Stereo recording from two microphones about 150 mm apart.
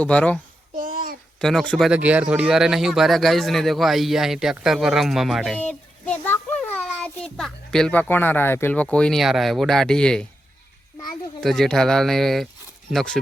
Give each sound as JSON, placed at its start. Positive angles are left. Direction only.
{"t": 0.0, "sound": "a child's voice", "side_deg": 10}
{"t": 0.8, "sound": "a sound", "side_deg": -70}
{"t": 1.4, "sound": "speech", "side_deg": 5}
{"t": 1.9, "sound": "a child's voice", "side_deg": -10}
{"t": 11.3, "sound": "speech", "side_deg": 0}